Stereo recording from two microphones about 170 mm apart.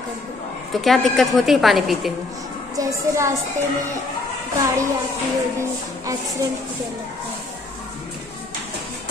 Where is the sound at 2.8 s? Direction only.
15° right (ahead or behind).